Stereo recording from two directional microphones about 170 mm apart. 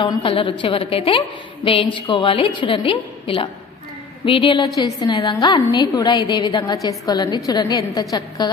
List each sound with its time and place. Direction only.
0.0 s a woman's voice: 30° left (ahead or behind)